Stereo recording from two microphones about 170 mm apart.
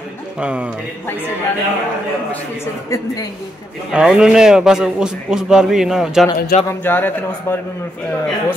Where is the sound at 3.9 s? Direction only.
5° right (ahead or behind).